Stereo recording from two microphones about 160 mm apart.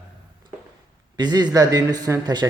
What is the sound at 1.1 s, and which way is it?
A man's voice, 25° right (ahead or behind).